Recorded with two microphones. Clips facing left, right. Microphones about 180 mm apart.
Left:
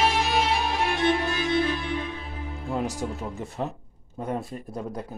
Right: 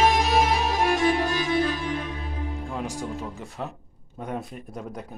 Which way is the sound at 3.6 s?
5° left (ahead or behind).